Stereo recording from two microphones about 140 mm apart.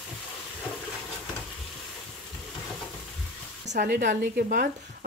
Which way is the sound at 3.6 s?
90° right.